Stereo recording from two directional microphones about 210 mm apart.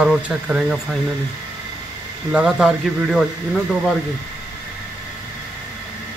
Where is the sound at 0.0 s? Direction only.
5° right (ahead or behind).